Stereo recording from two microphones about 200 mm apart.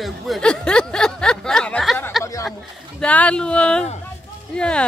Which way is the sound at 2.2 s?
15° left (ahead or behind).